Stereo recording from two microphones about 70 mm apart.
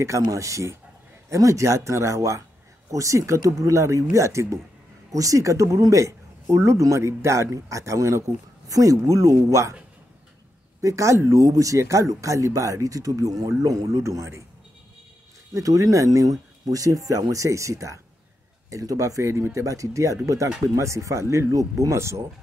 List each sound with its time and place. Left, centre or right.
0.0 s speech: right
10.8 s speech: right
15.5 s speech: right